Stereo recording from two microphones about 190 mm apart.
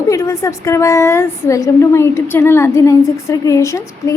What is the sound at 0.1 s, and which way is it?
A woman's voice, 15° left (ahead or behind).